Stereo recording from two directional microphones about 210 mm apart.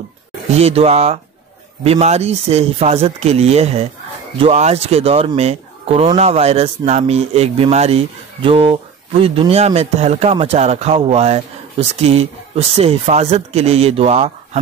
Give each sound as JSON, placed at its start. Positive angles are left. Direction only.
{"t": 0.6, "sound": "speech", "side_deg": -30}